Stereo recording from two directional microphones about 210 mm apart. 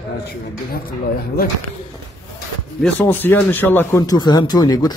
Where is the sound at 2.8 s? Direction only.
10° left (ahead or behind).